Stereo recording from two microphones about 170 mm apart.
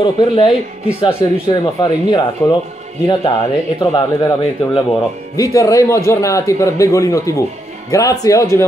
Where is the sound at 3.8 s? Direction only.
20° left (ahead or behind).